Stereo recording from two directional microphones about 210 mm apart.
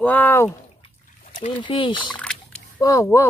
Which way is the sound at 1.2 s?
40° left (ahead or behind).